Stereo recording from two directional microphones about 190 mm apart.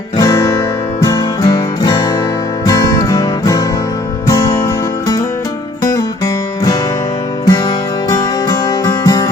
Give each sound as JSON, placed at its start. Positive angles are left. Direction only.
{"t": 0.2, "sound": "guitar", "side_deg": 15}
{"t": 1.0, "sound": "music", "side_deg": 20}